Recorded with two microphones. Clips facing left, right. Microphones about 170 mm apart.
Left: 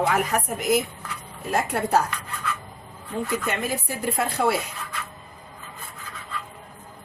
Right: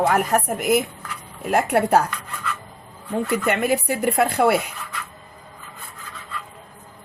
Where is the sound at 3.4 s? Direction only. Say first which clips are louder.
Right 7 dB; 65° right (ahead or behind).